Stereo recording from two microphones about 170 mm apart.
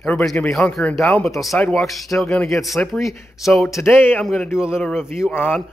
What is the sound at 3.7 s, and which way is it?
A man's voice, 15° left (ahead or behind).